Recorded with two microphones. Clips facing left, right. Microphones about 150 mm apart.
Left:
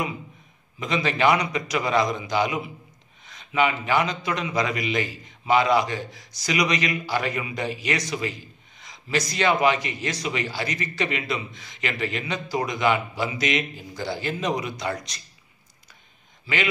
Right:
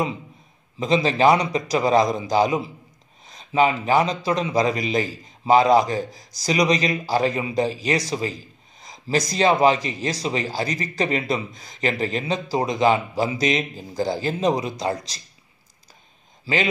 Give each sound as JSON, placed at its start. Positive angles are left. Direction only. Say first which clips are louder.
{"t": 0.7, "sound": "speech", "louder": "right 5 dB", "side_deg": -30}
{"t": 16.5, "sound": "speech", "louder": "right 4 dB", "side_deg": -30}